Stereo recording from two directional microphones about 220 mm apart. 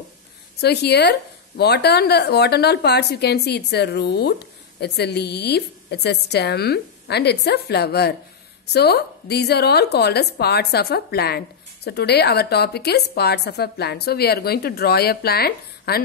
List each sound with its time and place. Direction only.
0.6 s a woman's voice: 50° left (ahead or behind)